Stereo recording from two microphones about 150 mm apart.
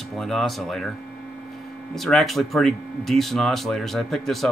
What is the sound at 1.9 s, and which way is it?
Speech, centre (ahead or behind).